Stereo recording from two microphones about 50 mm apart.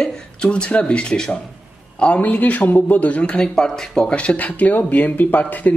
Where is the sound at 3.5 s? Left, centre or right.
Centre.